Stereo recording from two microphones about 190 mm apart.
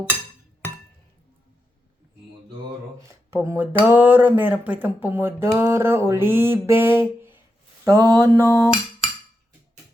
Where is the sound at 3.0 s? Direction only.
15° right (ahead or behind).